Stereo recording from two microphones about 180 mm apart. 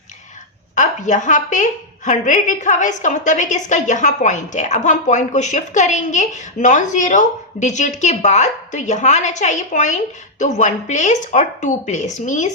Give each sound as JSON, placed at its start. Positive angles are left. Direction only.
{"t": 0.8, "sound": "a woman's voice", "side_deg": 45}